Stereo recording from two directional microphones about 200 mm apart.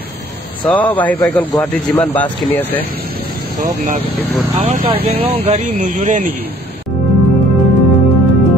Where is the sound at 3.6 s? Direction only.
35° right (ahead or behind).